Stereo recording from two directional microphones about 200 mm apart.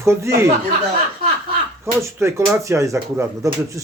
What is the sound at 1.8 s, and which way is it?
Speech, 15° right (ahead or behind).